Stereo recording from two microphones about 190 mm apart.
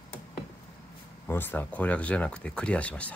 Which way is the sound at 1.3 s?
10° left (ahead or behind).